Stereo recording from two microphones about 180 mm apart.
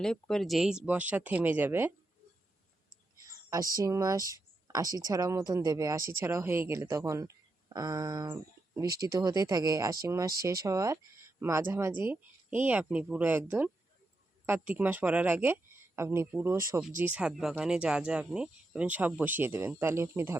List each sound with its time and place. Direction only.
0.0 s speech: 5° left (ahead or behind)
3.2 s speech: 20° right (ahead or behind)